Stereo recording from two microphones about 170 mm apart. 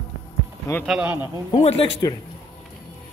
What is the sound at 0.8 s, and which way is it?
Speech, 5° right (ahead or behind).